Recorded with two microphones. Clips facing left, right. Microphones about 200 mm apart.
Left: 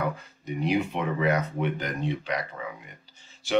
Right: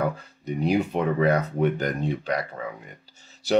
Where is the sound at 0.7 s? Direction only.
35° right (ahead or behind).